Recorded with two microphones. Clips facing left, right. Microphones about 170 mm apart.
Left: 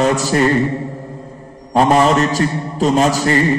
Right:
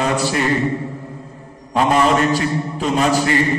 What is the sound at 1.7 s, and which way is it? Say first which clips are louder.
A man's voice: left 3 dB; 35° left (ahead or behind).